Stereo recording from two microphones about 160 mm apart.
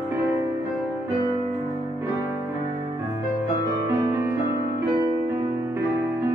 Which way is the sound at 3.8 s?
15° right (ahead or behind).